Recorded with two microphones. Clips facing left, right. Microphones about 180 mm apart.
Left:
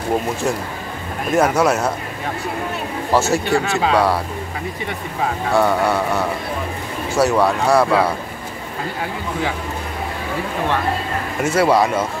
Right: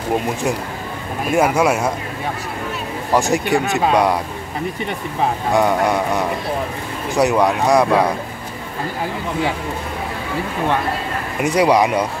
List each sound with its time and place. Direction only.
1.3 s speech: 10° right (ahead or behind)
3.1 s speech: 15° right (ahead or behind)
5.5 s speech: 15° right (ahead or behind)
11.4 s speech: 15° right (ahead or behind)